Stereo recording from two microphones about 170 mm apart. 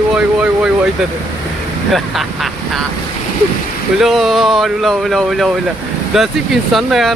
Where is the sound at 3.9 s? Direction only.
Centre (ahead or behind).